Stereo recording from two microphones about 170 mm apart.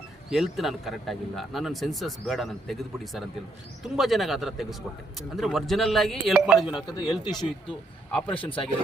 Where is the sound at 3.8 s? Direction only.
Centre (ahead or behind).